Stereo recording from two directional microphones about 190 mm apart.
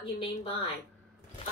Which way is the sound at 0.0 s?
25° left (ahead or behind).